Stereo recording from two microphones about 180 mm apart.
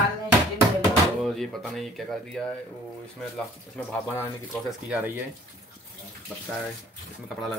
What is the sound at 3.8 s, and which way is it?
Speech, 5° left (ahead or behind).